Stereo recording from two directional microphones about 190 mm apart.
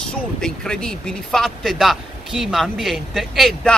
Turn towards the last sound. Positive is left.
turn(degrees=0)  # may be behind; listen again after turning